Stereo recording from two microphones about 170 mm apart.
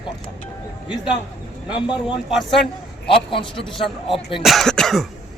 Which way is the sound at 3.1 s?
30° left (ahead or behind).